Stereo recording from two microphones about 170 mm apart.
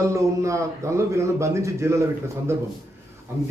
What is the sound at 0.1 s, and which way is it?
Speech, 20° right (ahead or behind).